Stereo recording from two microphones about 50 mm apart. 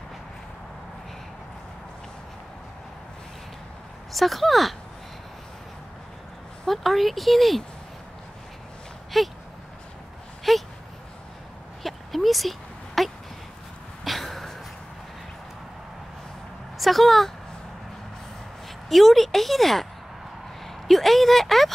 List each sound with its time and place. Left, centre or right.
4.1 s a woman's voice: centre
6.6 s speech: centre
9.1 s a woman's voice: centre
10.5 s a sound: centre
11.8 s a sound: centre
16.7 s speech: centre
18.9 s a woman's voice: centre